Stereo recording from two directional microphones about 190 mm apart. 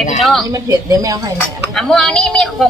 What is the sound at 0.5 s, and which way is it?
Speech, 20° right (ahead or behind).